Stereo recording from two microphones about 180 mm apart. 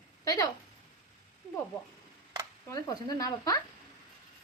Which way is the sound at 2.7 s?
20° left (ahead or behind).